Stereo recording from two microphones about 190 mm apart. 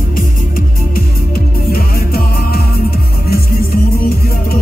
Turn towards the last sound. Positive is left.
turn(degrees=55)  # may be behind; listen again after turning